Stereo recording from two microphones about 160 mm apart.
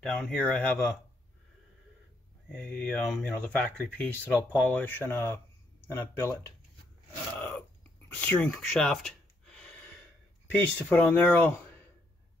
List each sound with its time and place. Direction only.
0.0 s speech: centre (ahead or behind)
2.5 s speech: 5° left (ahead or behind)
7.3 s burping: 10° left (ahead or behind)
8.1 s speech: 10° left (ahead or behind)